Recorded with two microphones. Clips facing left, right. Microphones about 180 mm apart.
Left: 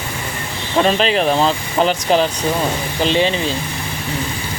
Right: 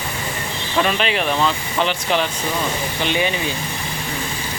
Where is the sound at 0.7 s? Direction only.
35° left (ahead or behind).